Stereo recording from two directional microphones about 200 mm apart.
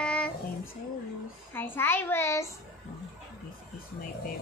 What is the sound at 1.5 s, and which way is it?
A child's voice, 10° left (ahead or behind).